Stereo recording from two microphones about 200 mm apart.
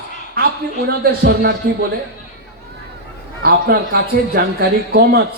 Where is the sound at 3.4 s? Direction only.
50° right (ahead or behind).